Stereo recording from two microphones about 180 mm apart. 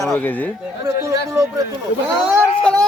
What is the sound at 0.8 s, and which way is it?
Speech, 20° right (ahead or behind).